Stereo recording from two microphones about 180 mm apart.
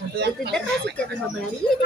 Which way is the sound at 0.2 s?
70° right (ahead or behind).